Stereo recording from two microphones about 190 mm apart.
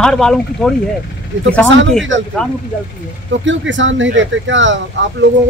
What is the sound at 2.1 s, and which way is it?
Speech, 75° right (ahead or behind).